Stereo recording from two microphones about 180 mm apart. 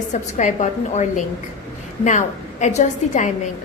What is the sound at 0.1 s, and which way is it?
A woman's voice, 40° left (ahead or behind).